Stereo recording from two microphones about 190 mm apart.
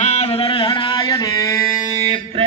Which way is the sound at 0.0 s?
35° left (ahead or behind).